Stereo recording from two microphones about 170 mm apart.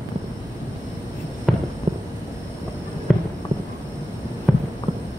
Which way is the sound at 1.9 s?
45° right (ahead or behind).